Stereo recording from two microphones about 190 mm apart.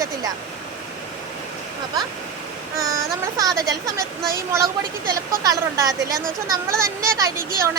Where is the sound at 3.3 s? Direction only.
20° right (ahead or behind).